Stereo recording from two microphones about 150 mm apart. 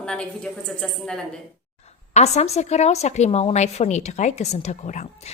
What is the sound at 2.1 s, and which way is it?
Speech, 50° left (ahead or behind).